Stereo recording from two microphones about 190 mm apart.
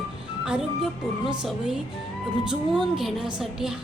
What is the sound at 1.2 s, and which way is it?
A woman's voice, centre (ahead or behind).